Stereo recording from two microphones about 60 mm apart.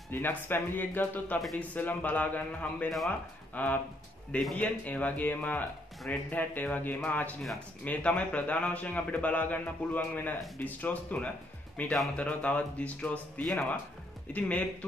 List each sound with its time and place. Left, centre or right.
0.1 s a man's voice: left